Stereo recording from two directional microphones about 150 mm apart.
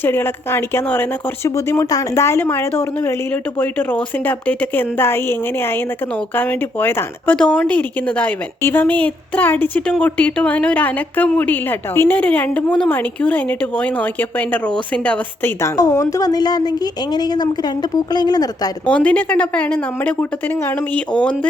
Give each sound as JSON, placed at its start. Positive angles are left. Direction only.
{"t": 0.0, "sound": "speech", "side_deg": 15}
{"t": 18.9, "sound": "speech", "side_deg": 10}